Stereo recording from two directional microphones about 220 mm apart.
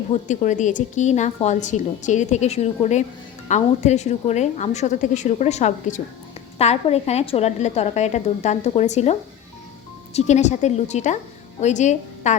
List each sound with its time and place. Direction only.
0.1 s a woman's voice: 35° left (ahead or behind)
10.2 s a woman's voice: 30° left (ahead or behind)